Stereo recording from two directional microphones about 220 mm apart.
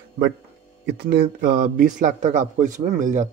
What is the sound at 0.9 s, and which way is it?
A man's voice, 45° right (ahead or behind).